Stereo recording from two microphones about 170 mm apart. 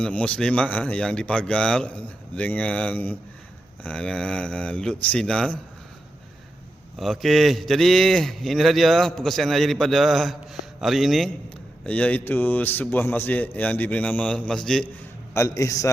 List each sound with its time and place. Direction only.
0.0 s a man's voice: 5° left (ahead or behind)
7.0 s a man's voice: centre (ahead or behind)
15.3 s a man's voice: 15° left (ahead or behind)